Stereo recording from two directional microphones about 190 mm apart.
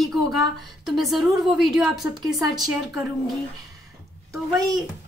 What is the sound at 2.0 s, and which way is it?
Speech, 20° right (ahead or behind).